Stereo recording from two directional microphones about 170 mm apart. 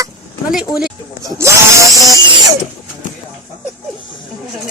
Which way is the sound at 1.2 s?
15° right (ahead or behind).